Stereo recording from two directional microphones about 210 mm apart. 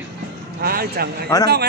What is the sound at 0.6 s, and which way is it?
Speech, 45° right (ahead or behind).